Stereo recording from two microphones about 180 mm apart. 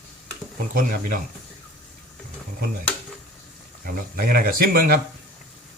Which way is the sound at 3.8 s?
55° right (ahead or behind).